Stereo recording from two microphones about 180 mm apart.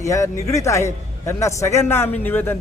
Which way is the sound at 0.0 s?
15° left (ahead or behind).